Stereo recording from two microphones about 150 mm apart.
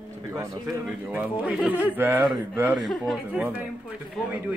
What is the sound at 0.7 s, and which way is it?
A man's voice, 10° right (ahead or behind).